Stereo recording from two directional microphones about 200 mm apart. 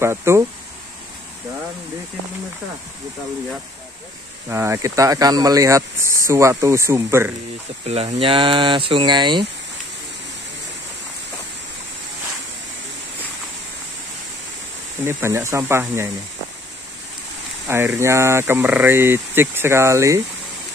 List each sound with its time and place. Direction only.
0.0 s speech: 15° right (ahead or behind)
4.5 s speech: 15° right (ahead or behind)
7.9 s speech: 30° right (ahead or behind)
15.0 s speech: 15° right (ahead or behind)
17.6 s speech: 10° right (ahead or behind)